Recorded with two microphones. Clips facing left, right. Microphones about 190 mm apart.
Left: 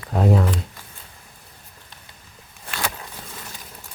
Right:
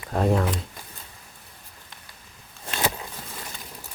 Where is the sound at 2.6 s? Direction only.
20° right (ahead or behind).